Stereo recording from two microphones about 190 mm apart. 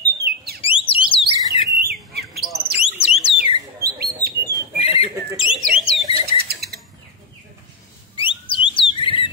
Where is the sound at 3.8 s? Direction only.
55° right (ahead or behind).